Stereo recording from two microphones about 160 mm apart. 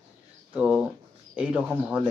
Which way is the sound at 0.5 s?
5° right (ahead or behind).